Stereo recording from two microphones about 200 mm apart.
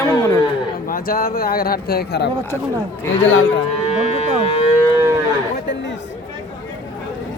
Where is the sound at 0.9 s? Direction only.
50° left (ahead or behind).